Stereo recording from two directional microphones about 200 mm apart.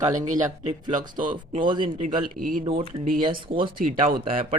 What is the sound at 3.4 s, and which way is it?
Speech, 25° right (ahead or behind).